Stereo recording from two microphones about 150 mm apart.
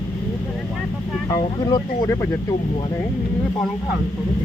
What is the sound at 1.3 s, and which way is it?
Speech, 25° left (ahead or behind).